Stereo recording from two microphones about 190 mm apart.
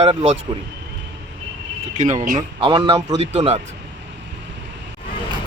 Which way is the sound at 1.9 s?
40° right (ahead or behind).